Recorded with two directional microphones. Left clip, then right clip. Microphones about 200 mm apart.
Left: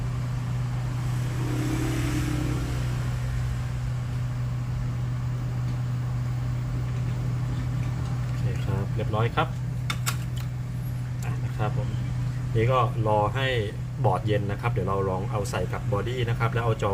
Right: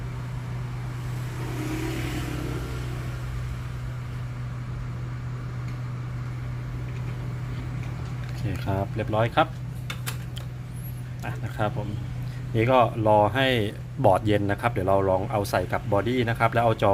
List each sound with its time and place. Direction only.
9.0 s speech: 55° right (ahead or behind)
12.5 s speech: 55° right (ahead or behind)